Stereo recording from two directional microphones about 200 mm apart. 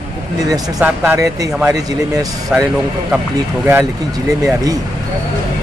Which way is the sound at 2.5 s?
5° right (ahead or behind).